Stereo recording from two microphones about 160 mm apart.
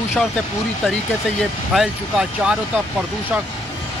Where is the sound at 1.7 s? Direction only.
5° right (ahead or behind).